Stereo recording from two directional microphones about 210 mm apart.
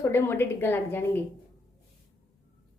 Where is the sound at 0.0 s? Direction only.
10° left (ahead or behind).